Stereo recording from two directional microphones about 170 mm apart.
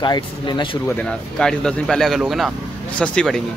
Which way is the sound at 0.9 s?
5° left (ahead or behind).